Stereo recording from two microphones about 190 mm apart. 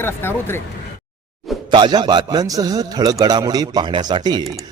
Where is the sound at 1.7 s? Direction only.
25° right (ahead or behind).